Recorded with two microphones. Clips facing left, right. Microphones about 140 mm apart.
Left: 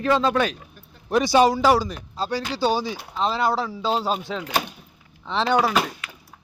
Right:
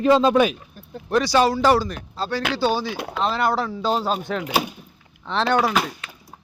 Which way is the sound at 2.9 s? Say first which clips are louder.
Right 7 dB; 70° right (ahead or behind).